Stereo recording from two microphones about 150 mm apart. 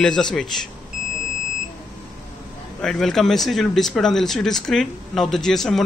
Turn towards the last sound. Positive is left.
turn(degrees=5)  # may be behind; listen again after turning